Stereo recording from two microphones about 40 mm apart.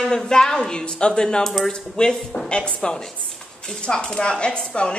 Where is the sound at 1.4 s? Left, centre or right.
Centre.